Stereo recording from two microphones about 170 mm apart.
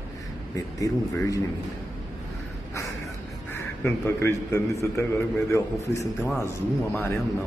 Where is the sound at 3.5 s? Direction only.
15° left (ahead or behind).